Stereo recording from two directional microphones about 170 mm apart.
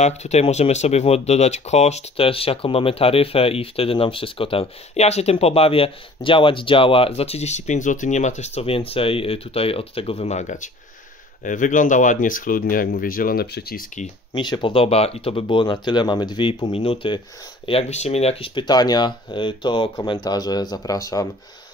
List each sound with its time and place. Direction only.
0.0 s speech: 40° left (ahead or behind); by 13.8 s 65° left (ahead or behind)
14.3 s speech: 25° left (ahead or behind)